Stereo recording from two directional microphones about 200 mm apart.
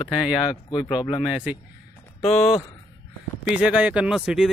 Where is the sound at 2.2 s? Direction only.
30° left (ahead or behind).